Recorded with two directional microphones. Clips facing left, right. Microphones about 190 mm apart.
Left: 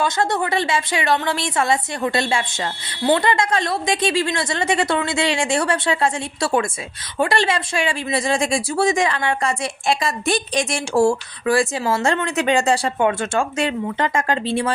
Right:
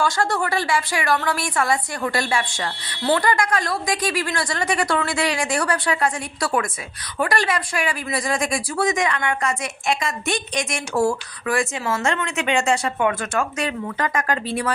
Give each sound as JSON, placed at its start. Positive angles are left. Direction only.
{"t": 0.0, "sound": "speech", "side_deg": 20}